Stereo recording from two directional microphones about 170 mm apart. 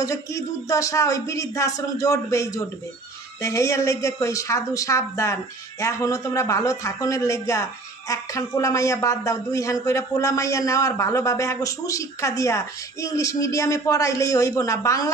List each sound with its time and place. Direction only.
0.0 s speech: 20° left (ahead or behind)